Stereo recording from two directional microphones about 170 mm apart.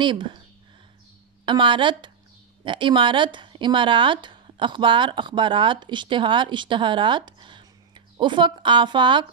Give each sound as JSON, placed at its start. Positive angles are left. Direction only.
{"t": 0.0, "sound": "speech", "side_deg": -30}
{"t": 1.4, "sound": "speech", "side_deg": -30}